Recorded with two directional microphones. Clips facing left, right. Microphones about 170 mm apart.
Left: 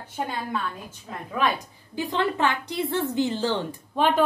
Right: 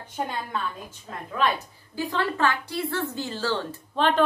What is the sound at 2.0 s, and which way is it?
A woman's voice, 20° left (ahead or behind).